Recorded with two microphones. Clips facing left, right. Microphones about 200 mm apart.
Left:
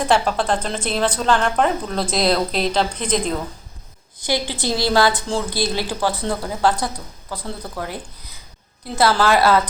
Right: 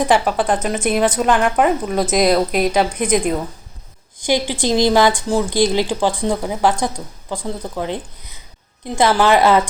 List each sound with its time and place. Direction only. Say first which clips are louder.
0.0 s a woman's voice: right 3 dB; 10° right (ahead or behind)